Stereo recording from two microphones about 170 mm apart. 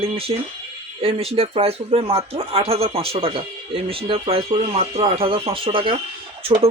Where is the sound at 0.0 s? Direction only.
35° right (ahead or behind).